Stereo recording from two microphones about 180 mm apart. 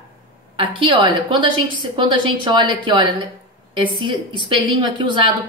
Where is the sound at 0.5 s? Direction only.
30° right (ahead or behind).